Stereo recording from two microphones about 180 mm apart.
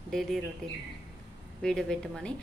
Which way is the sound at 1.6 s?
5° left (ahead or behind).